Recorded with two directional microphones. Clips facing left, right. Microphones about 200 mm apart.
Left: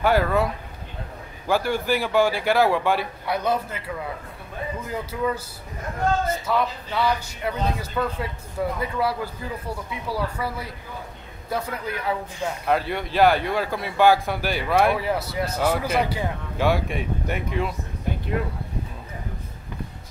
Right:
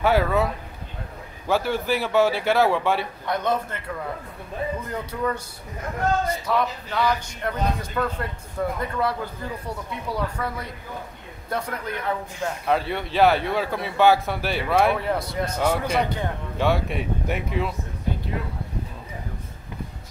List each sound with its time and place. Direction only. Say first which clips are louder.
0.0 s speech: even; centre (ahead or behind)
1.5 s speech: left 1 dB; centre (ahead or behind)